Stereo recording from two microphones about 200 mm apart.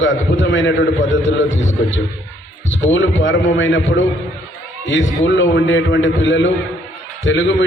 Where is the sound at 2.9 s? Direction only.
70° left (ahead or behind).